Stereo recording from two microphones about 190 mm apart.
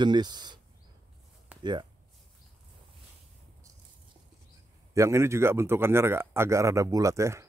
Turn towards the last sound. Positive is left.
turn(degrees=-15)  # may be behind; listen again after turning